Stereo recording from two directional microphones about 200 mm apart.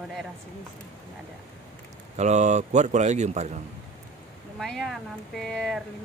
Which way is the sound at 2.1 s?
35° right (ahead or behind).